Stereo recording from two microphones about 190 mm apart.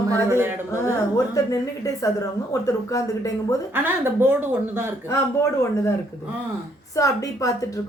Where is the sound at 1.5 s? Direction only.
15° left (ahead or behind).